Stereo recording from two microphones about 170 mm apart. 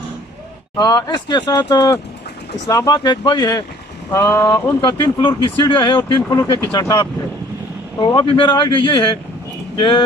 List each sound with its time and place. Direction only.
0.7 s speech: 25° left (ahead or behind)